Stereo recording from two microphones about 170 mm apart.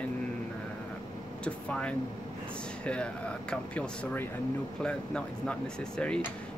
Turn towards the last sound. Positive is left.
turn(degrees=5)  # may be behind; listen again after turning